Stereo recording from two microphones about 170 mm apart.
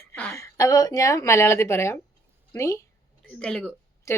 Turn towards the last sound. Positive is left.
turn(degrees=15)  # may be behind; listen again after turning